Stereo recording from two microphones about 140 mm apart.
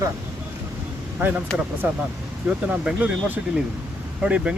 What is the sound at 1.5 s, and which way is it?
Speech, 5° left (ahead or behind).